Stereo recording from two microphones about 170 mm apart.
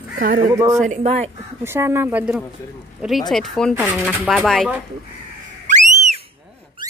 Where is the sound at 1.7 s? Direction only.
15° right (ahead or behind); by 4.7 s 5° left (ahead or behind).